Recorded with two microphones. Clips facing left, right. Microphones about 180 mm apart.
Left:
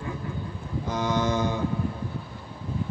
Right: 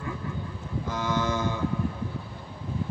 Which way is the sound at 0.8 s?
20° left (ahead or behind).